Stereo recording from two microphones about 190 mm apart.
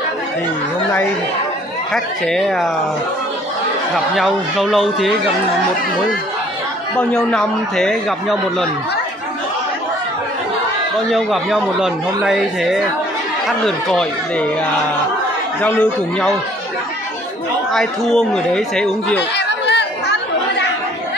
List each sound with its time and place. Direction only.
2.2 s a man's voice: centre (ahead or behind)
3.9 s a man's voice: centre (ahead or behind)
7.0 s a man's voice: 5° left (ahead or behind)
11.1 s a man's voice: centre (ahead or behind)
15.6 s a man's voice: 5° left (ahead or behind)
17.7 s a man's voice: 5° left (ahead or behind)
19.3 s chatter: 65° left (ahead or behind)